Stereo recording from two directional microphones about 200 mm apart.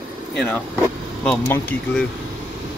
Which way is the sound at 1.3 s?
10° left (ahead or behind).